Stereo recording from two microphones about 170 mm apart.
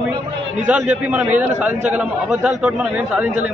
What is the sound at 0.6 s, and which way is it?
A man's voice, 10° right (ahead or behind).